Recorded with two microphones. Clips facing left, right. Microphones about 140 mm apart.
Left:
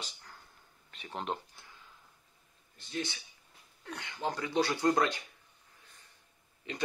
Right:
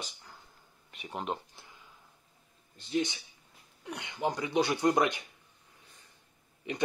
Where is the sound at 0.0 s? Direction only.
10° right (ahead or behind).